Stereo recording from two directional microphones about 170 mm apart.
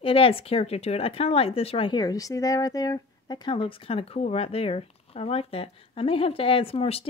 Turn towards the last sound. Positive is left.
turn(degrees=35)  # may be behind; listen again after turning